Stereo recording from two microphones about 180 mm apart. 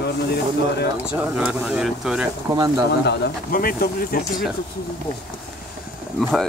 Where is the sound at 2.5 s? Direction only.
25° right (ahead or behind).